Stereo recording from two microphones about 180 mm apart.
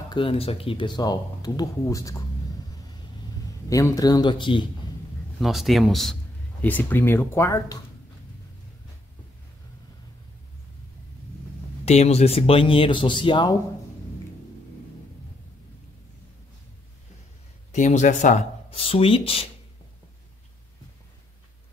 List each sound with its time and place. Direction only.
0.1 s speech: 30° left (ahead or behind)
3.6 s speech: 20° left (ahead or behind)
5.4 s speech: centre (ahead or behind); by 7.8 s 15° left (ahead or behind)
11.8 s speech: 35° left (ahead or behind)
17.7 s speech: 45° left (ahead or behind)